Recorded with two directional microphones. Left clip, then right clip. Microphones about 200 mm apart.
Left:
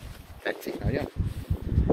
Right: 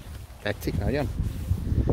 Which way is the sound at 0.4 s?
15° right (ahead or behind).